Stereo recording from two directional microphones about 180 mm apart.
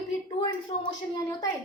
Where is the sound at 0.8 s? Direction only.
20° left (ahead or behind).